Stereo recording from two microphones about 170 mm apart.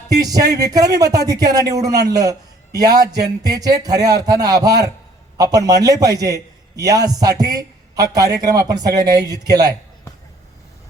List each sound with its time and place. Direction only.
0.2 s a man's voice: 20° right (ahead or behind)